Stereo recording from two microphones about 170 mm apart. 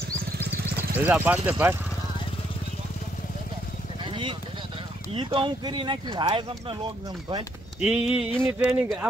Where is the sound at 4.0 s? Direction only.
30° right (ahead or behind).